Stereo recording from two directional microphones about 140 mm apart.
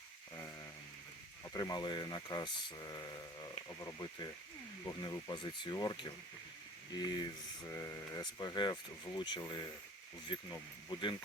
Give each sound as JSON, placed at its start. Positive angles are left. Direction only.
{"t": 1.5, "sound": "speech", "side_deg": 30}